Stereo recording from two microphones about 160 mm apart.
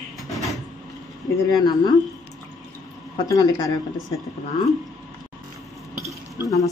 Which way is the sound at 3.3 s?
20° left (ahead or behind).